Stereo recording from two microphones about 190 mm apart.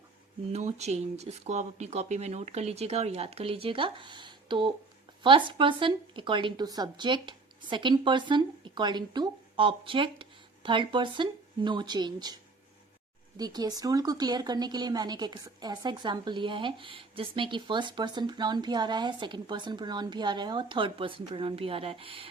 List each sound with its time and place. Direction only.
0.5 s speech: 35° right (ahead or behind)